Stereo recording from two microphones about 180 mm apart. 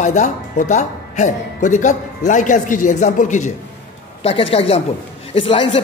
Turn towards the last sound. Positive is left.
turn(degrees=30)  # may be behind; listen again after turning